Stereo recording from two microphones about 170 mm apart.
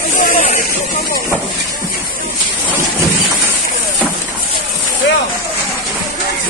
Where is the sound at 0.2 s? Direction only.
50° left (ahead or behind).